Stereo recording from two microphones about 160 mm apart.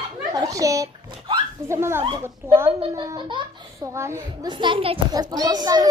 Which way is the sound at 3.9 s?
15° right (ahead or behind).